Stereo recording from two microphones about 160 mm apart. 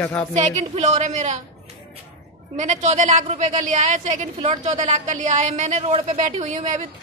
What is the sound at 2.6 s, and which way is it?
A woman's voice, 50° right (ahead or behind).